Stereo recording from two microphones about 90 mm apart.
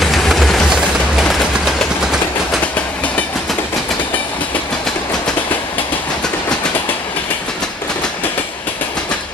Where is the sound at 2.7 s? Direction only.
15° left (ahead or behind).